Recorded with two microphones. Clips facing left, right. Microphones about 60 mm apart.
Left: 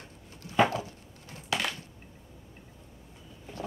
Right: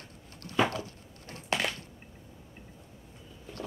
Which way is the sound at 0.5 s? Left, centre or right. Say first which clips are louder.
Left 3 dB; centre.